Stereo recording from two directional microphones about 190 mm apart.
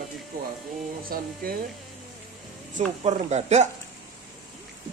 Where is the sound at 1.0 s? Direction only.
50° right (ahead or behind).